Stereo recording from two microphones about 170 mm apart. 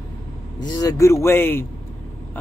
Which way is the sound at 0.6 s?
25° left (ahead or behind).